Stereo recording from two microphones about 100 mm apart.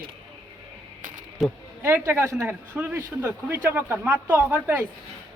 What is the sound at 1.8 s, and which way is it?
Speech, 25° right (ahead or behind).